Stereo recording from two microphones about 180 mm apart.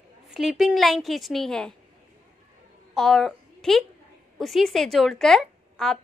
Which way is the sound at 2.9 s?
Centre (ahead or behind).